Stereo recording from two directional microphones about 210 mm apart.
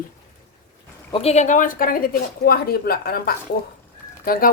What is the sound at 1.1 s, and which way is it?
Speech, 30° left (ahead or behind).